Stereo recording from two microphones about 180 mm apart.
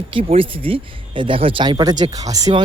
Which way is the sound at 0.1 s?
30° right (ahead or behind).